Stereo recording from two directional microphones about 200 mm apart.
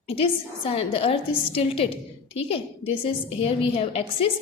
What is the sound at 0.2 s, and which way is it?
A woman's voice, 30° left (ahead or behind).